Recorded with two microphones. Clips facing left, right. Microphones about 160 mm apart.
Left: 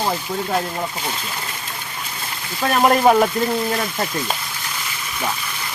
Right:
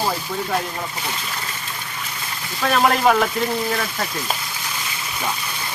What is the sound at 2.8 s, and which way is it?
Speech, 20° left (ahead or behind).